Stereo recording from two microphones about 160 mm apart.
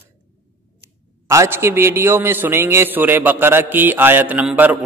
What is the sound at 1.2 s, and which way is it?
A man's voice, 15° right (ahead or behind).